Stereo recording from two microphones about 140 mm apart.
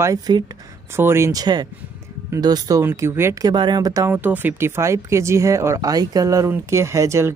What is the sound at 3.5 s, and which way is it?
Speech, 30° right (ahead or behind).